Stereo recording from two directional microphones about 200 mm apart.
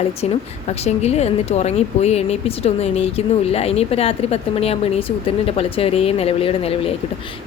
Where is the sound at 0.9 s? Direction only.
35° left (ahead or behind).